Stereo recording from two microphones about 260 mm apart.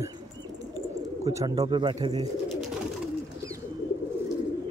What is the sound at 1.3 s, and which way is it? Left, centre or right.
Speech, centre.